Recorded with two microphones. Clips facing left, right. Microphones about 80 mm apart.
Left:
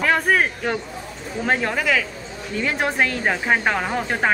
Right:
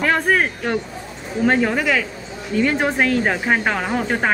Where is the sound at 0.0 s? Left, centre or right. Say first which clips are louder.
Right 1 dB; centre.